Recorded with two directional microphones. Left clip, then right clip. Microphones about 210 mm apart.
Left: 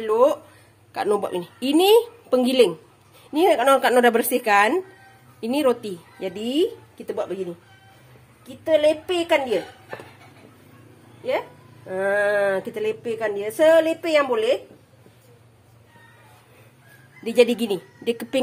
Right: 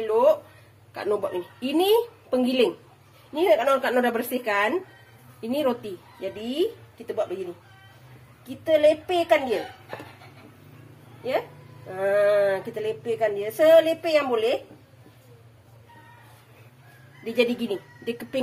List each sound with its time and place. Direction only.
0.0 s a sound: 50° left (ahead or behind)
0.9 s speech: 50° left (ahead or behind)
8.6 s speech: 45° left (ahead or behind)
11.9 s speech: 45° left (ahead or behind)
17.2 s a woman's voice: 50° left (ahead or behind)